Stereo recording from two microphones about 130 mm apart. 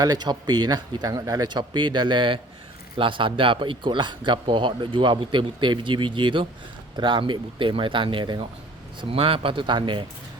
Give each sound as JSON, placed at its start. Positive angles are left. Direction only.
{"t": 0.0, "sound": "speech", "side_deg": -30}